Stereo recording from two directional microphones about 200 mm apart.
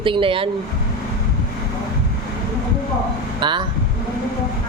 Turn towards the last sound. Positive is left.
turn(degrees=-25)  # may be behind; listen again after turning